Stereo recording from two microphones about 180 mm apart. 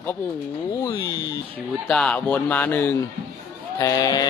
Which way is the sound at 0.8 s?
25° left (ahead or behind).